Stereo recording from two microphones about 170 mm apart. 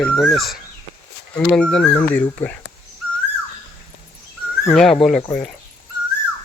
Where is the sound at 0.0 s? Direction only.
5° left (ahead or behind).